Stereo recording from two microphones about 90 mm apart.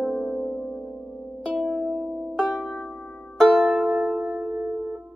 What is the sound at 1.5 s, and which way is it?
Music, 10° right (ahead or behind).